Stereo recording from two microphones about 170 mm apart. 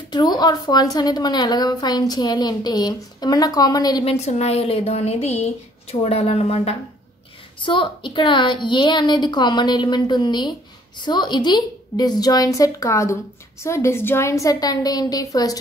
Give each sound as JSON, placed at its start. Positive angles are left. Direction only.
{"t": 0.1, "sound": "a woman's voice", "side_deg": 25}
{"t": 4.0, "sound": "a woman's voice", "side_deg": 35}